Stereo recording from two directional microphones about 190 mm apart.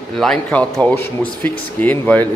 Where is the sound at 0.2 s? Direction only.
5° left (ahead or behind).